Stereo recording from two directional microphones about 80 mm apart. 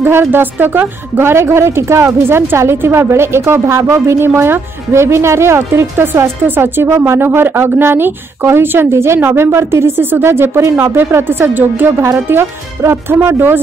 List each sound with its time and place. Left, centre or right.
0.0 s speech: right